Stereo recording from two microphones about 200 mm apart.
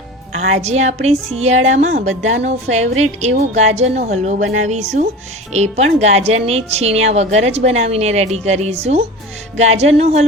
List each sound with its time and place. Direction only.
0.5 s speech: 35° right (ahead or behind)